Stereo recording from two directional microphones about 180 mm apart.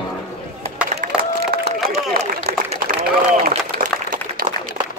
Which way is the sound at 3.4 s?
55° right (ahead or behind).